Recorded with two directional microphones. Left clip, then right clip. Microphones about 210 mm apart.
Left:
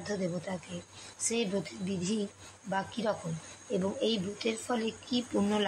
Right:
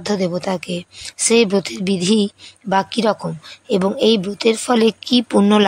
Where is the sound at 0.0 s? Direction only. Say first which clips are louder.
Right 15 dB; 50° right (ahead or behind).